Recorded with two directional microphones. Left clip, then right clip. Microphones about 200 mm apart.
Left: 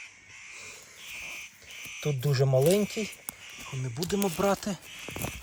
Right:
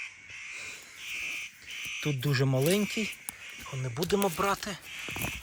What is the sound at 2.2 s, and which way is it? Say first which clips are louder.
Speech: left 6 dB; 25° left (ahead or behind).